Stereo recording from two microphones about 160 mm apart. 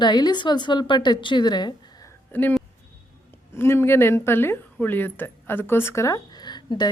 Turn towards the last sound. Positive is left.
turn(degrees=25)  # may be behind; listen again after turning